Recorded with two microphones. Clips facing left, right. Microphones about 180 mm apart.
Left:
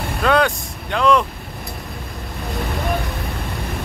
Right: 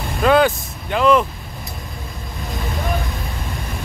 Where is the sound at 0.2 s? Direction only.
5° right (ahead or behind).